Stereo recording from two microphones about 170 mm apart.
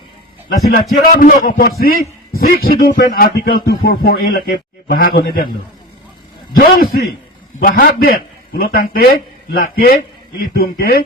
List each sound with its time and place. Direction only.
0.7 s a man's voice: 55° left (ahead or behind)
6.6 s a man's voice: 60° left (ahead or behind)